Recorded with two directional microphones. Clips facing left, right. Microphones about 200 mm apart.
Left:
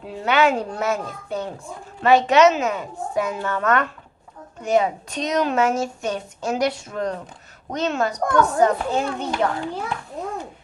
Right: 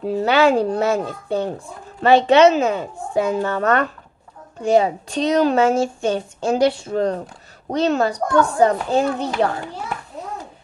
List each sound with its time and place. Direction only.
0.0 s a woman's voice: 35° right (ahead or behind)